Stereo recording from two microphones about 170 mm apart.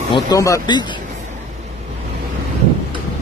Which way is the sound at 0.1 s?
20° left (ahead or behind).